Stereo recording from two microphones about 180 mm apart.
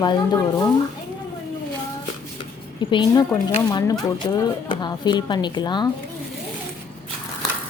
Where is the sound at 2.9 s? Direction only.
25° left (ahead or behind).